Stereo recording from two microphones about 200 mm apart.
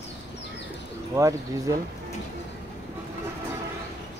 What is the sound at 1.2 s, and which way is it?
Speech, 15° right (ahead or behind).